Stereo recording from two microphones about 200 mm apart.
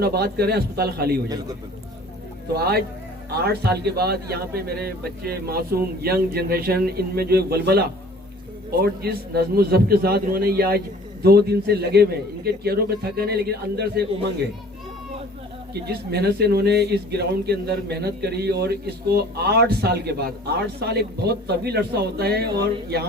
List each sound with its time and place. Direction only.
0.0 s speech: 50° right (ahead or behind)
1.3 s a man's voice: 20° right (ahead or behind)
2.6 s speech: 50° right (ahead or behind)
15.7 s speech: 55° right (ahead or behind)